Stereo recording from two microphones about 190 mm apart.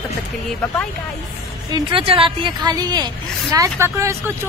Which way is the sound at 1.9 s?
30° right (ahead or behind).